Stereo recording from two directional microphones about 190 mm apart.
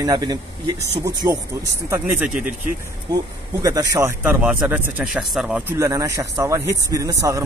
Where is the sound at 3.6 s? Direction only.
20° right (ahead or behind).